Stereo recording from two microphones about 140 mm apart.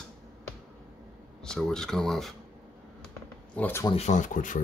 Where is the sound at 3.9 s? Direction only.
55° left (ahead or behind).